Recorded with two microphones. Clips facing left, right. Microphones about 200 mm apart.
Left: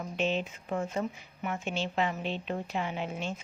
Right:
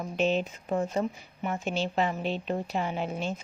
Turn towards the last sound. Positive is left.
turn(degrees=-35)  # may be behind; listen again after turning